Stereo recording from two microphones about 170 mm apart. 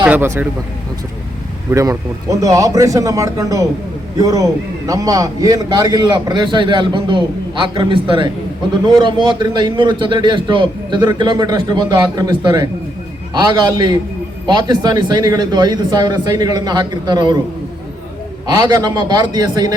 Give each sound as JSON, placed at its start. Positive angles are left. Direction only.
{"t": 0.0, "sound": "speech", "side_deg": -10}
{"t": 1.7, "sound": "a man's voice", "side_deg": -20}
{"t": 18.4, "sound": "a man's voice", "side_deg": -25}